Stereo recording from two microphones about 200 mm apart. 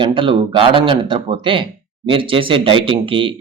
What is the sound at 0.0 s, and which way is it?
Speech, 25° right (ahead or behind).